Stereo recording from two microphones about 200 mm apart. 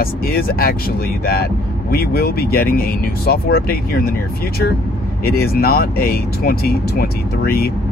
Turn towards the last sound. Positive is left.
turn(degrees=50)  # may be behind; listen again after turning